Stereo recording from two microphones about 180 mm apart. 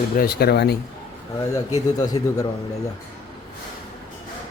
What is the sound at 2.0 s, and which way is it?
Speech, 20° left (ahead or behind).